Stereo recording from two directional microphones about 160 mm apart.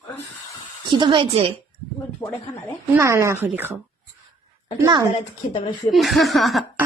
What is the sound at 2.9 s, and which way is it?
Speech, 15° right (ahead or behind).